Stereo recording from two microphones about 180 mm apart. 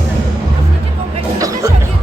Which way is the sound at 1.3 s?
20° right (ahead or behind).